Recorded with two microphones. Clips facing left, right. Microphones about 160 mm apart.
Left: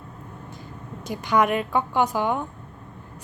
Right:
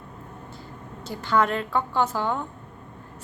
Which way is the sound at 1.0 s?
15° left (ahead or behind).